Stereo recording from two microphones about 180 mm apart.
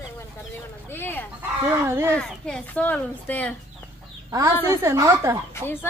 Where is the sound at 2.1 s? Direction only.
5° left (ahead or behind).